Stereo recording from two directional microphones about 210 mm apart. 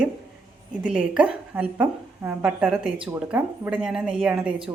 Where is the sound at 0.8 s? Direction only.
5° right (ahead or behind).